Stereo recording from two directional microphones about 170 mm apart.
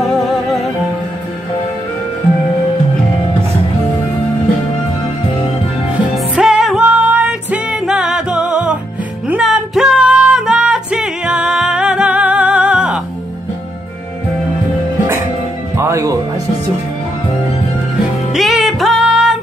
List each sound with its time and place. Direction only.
6.1 s music: 5° right (ahead or behind)
15.8 s music: 20° right (ahead or behind)
18.3 s music: centre (ahead or behind)